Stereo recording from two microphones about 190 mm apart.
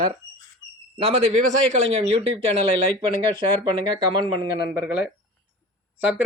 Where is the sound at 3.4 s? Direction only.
25° right (ahead or behind).